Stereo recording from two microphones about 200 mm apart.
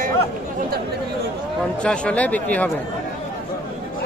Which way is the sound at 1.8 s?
5° left (ahead or behind).